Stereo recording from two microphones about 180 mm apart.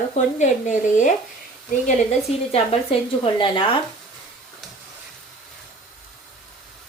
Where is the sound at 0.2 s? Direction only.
45° left (ahead or behind).